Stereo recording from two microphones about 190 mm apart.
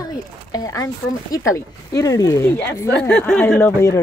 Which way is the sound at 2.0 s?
20° left (ahead or behind).